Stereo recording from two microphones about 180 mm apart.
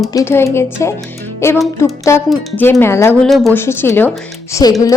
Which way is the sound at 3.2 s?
Centre (ahead or behind).